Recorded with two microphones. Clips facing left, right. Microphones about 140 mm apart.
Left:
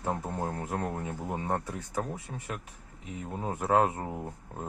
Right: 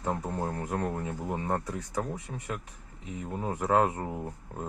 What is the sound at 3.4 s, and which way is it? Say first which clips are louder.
Speech: even; 20° left (ahead or behind).